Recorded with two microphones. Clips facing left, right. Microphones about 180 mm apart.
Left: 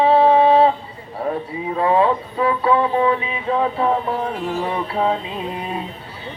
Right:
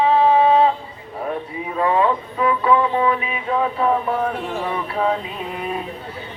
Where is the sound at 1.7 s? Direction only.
30° left (ahead or behind).